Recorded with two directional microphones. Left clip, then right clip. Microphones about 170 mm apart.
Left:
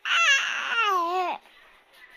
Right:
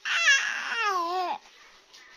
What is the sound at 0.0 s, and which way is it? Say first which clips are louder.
Baby cry: left 2 dB; 20° left (ahead or behind).